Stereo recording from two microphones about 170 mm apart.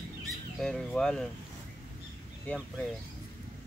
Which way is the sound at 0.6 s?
5° left (ahead or behind).